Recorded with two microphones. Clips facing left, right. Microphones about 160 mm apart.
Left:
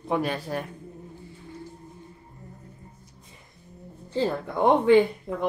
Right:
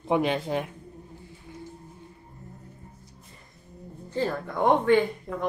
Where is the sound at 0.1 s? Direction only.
20° right (ahead or behind).